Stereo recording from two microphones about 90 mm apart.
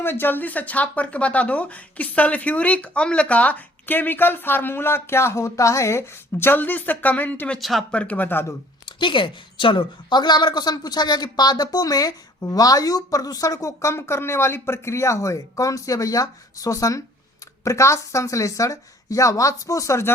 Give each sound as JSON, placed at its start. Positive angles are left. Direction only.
{"t": 0.0, "sound": "speech", "side_deg": 25}
{"t": 7.6, "sound": "speech", "side_deg": 0}
{"t": 7.9, "sound": "speech", "side_deg": 15}
{"t": 8.9, "sound": "a woman's voice", "side_deg": 65}